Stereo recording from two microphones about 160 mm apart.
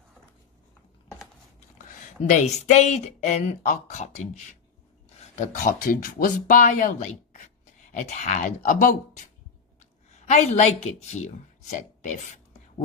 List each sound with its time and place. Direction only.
2.2 s a woman's voice: 50° left (ahead or behind)